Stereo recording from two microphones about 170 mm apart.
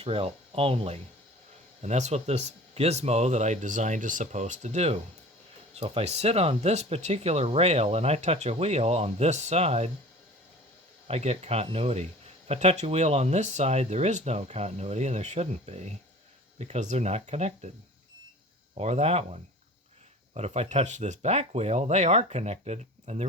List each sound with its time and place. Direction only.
0.0 s speech: 35° right (ahead or behind)
11.1 s speech: 40° right (ahead or behind)
18.7 s speech: 40° right (ahead or behind)